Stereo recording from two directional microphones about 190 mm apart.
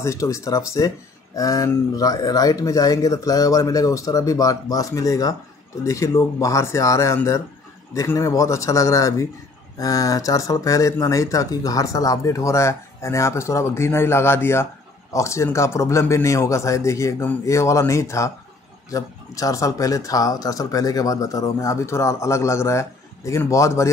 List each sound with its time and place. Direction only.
0.0 s speech: 15° left (ahead or behind)